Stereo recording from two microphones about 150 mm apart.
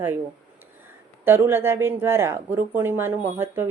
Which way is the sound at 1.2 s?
15° right (ahead or behind).